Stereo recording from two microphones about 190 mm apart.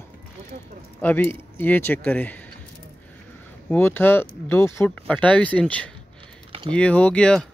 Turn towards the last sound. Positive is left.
turn(degrees=5)  # may be behind; listen again after turning